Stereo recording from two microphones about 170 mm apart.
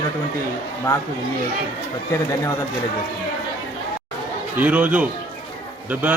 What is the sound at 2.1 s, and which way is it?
Speech, 15° left (ahead or behind).